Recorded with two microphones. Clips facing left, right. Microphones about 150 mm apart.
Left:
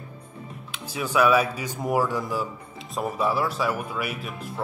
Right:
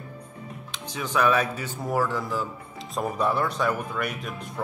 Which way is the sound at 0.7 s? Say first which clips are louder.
Left 3 dB; 10° left (ahead or behind).